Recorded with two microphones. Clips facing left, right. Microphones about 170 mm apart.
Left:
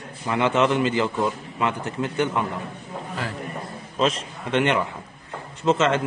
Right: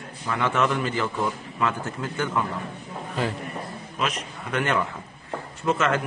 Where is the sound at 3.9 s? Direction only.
30° left (ahead or behind).